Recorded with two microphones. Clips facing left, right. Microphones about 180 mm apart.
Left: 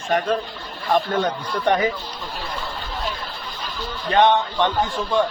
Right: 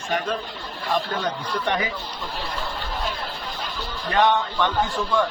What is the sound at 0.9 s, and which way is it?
Speech, 45° left (ahead or behind).